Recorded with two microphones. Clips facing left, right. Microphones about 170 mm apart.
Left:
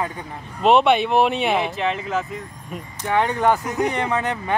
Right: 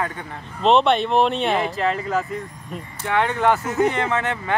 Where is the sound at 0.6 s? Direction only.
5° left (ahead or behind).